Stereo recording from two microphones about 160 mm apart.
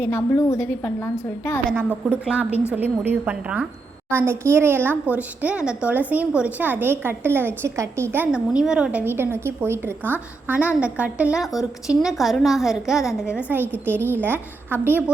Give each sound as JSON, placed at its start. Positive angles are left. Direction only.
{"t": 0.0, "sound": "a woman's voice", "side_deg": 15}
{"t": 1.7, "sound": "a woman's voice", "side_deg": -10}